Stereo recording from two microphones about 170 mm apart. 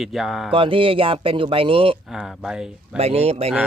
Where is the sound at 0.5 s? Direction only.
30° right (ahead or behind).